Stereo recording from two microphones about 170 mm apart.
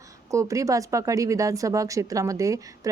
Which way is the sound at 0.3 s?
20° right (ahead or behind).